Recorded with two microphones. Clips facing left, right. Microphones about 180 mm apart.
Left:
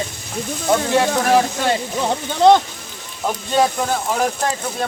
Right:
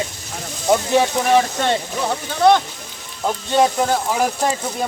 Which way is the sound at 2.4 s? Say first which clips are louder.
Left 2 dB; 20° left (ahead or behind).